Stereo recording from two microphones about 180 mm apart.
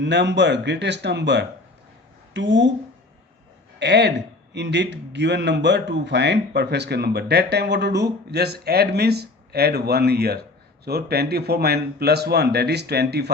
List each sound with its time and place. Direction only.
0.0 s a man's voice: 75° right (ahead or behind)
3.8 s a man's voice: 70° right (ahead or behind)